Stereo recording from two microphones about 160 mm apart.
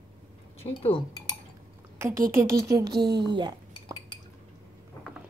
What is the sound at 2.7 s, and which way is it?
Speech, 20° right (ahead or behind).